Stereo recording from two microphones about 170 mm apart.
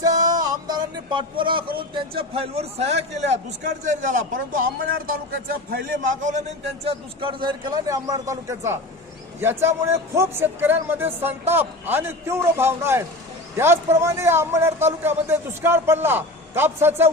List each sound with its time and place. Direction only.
0.0 s music: 20° right (ahead or behind)
1.9 s a man's voice: 35° right (ahead or behind); by 6.4 s 50° right (ahead or behind)
6.8 s a man's voice: 30° right (ahead or behind); by 17.1 s 15° right (ahead or behind)